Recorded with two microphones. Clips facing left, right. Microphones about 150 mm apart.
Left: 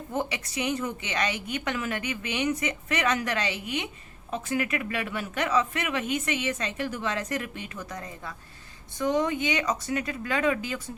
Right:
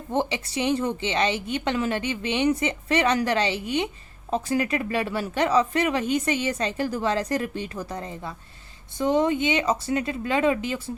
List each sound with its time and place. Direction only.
0.1 s a woman's voice: 30° right (ahead or behind)